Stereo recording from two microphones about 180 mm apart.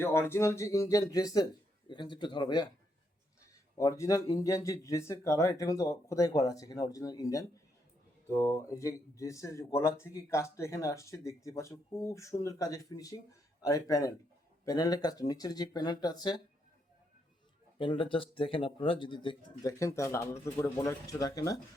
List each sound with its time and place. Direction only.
0.0 s speech: 15° left (ahead or behind)
3.8 s speech: 15° left (ahead or behind)
17.7 s speech: 30° left (ahead or behind)
19.8 s speech: 15° left (ahead or behind)